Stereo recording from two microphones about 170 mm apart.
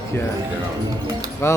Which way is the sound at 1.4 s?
15° left (ahead or behind).